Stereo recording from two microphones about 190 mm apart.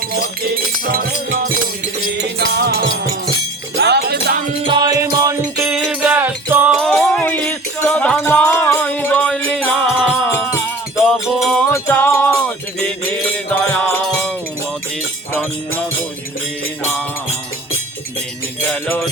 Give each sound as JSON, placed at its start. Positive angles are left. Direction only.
{"t": 0.1, "sound": "music", "side_deg": -50}
{"t": 4.0, "sound": "music", "side_deg": -45}
{"t": 4.6, "sound": "music", "side_deg": -25}
{"t": 6.8, "sound": "music", "side_deg": 0}
{"t": 10.2, "sound": "music", "side_deg": 15}
{"t": 11.0, "sound": "music", "side_deg": 0}
{"t": 11.7, "sound": "wind chime", "side_deg": 15}
{"t": 12.8, "sound": "music", "side_deg": 5}
{"t": 15.3, "sound": "music", "side_deg": 10}
{"t": 18.7, "sound": "music", "side_deg": 10}